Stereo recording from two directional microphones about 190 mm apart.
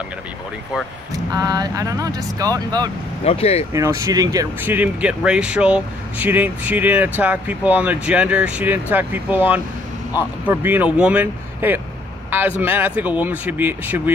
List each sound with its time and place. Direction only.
1.1 s speech: 20° right (ahead or behind)
3.3 s speech: 30° left (ahead or behind)
3.7 s speech: 15° right (ahead or behind)